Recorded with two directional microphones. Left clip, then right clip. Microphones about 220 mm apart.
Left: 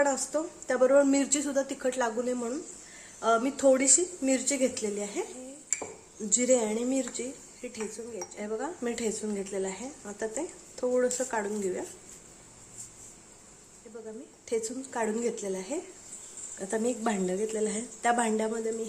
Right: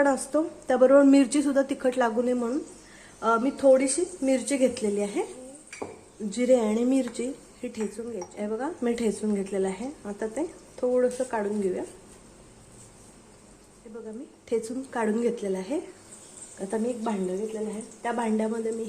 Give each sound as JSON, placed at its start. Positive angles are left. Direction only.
{"t": 0.0, "sound": "speech", "side_deg": -10}
{"t": 4.3, "sound": "speech", "side_deg": 0}
{"t": 6.3, "sound": "speech", "side_deg": 0}
{"t": 6.7, "sound": "speech", "side_deg": -10}
{"t": 8.4, "sound": "speech", "side_deg": 0}
{"t": 14.5, "sound": "speech", "side_deg": -5}
{"t": 17.0, "sound": "a woman's voice", "side_deg": 20}
{"t": 18.3, "sound": "speech", "side_deg": 5}